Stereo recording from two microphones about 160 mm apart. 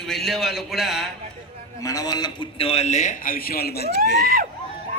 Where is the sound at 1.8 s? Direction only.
20° left (ahead or behind); by 3.9 s 75° left (ahead or behind).